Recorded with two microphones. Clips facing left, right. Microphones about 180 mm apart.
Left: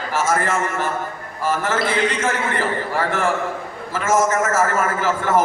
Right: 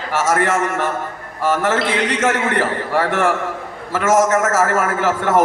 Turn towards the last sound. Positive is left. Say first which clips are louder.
# right 2 dB
turn(degrees=-80)